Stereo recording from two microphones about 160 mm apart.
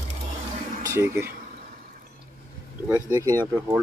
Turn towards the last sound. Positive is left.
turn(degrees=-20)  # may be behind; listen again after turning